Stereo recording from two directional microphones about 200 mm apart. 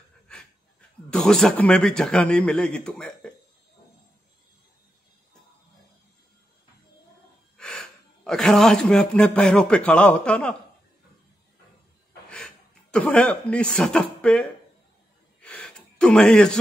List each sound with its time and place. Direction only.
0.3 s speech: 5° left (ahead or behind)
7.5 s speech: 5° left (ahead or behind)
12.3 s a man's voice: 5° left (ahead or behind)
15.4 s a sound: 5° left (ahead or behind)